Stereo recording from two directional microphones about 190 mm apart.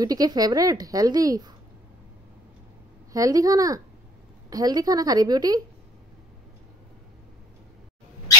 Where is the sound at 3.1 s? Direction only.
20° right (ahead or behind).